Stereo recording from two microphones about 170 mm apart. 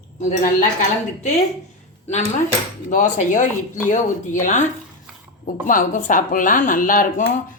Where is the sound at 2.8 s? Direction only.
45° left (ahead or behind).